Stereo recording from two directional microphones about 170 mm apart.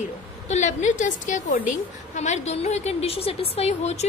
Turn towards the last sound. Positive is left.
turn(degrees=40)  # may be behind; listen again after turning